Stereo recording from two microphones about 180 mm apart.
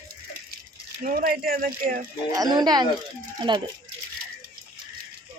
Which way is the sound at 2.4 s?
20° right (ahead or behind).